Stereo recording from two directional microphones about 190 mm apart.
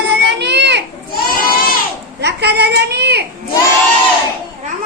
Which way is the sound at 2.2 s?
60° right (ahead or behind).